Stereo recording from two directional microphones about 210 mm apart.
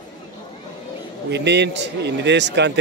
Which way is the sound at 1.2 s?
55° right (ahead or behind).